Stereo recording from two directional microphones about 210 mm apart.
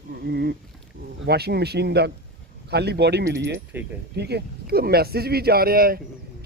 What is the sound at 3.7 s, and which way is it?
Speech, 10° right (ahead or behind).